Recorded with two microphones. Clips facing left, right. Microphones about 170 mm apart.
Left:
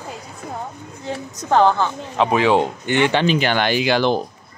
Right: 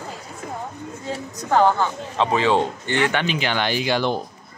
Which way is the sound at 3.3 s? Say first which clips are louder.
Left 4 dB; 55° left (ahead or behind).